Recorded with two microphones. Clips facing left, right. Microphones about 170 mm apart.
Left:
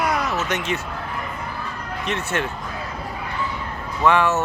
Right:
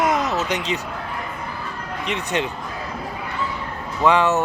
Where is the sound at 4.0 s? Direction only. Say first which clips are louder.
Right 1 dB; 15° right (ahead or behind).